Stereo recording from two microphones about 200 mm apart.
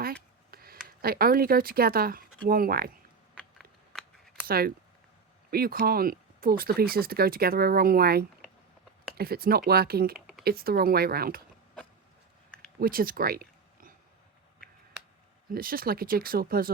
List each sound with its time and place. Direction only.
0.0 s speech: 50° right (ahead or behind)
3.3 s a sound: centre (ahead or behind)
4.4 s speech: 50° right (ahead or behind)
10.2 s a sound: 5° right (ahead or behind)
10.4 s speech: 50° right (ahead or behind)
12.8 s speech: 45° right (ahead or behind)
15.5 s speech: 45° right (ahead or behind)